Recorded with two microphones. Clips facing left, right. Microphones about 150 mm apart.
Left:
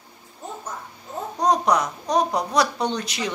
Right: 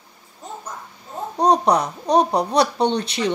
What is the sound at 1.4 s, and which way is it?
A woman's voice, 30° right (ahead or behind).